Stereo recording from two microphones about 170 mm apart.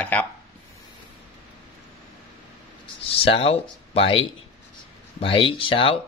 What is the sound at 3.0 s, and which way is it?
Speech, 35° left (ahead or behind).